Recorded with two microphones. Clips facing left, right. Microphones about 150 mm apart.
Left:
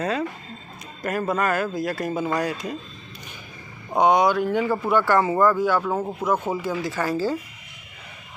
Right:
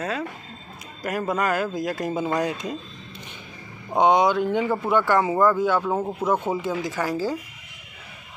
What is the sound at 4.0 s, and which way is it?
Speech, 20° right (ahead or behind).